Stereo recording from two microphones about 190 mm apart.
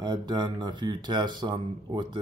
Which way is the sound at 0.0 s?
20° right (ahead or behind).